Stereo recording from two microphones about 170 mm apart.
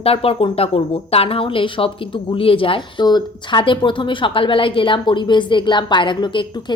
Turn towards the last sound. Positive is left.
turn(degrees=30)  # may be behind; listen again after turning